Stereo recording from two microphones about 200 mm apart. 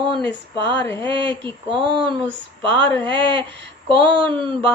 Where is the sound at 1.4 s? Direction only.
25° right (ahead or behind).